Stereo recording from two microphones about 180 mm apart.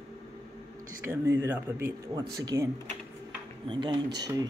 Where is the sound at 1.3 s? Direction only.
15° right (ahead or behind).